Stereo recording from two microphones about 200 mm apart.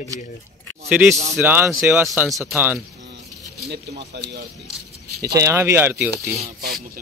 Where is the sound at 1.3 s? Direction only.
10° right (ahead or behind).